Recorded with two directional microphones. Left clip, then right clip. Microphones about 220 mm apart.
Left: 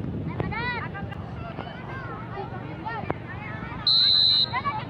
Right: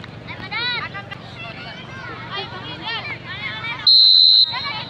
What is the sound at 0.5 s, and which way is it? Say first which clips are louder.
Vehicle: right 8 dB; 50° right (ahead or behind).